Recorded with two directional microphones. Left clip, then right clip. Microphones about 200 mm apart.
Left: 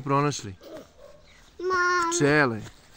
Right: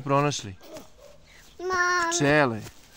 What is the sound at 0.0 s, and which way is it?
Speech, 15° right (ahead or behind).